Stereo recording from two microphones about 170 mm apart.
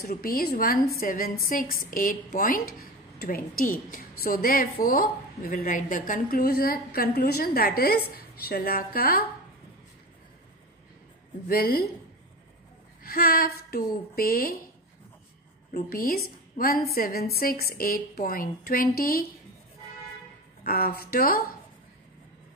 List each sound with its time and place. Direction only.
0.0 s a woman's voice: 60° left (ahead or behind)
11.4 s a woman's voice: 60° left (ahead or behind)
13.0 s a woman's voice: 60° left (ahead or behind)
15.7 s a woman's voice: 60° left (ahead or behind)
20.6 s a woman's voice: 60° left (ahead or behind)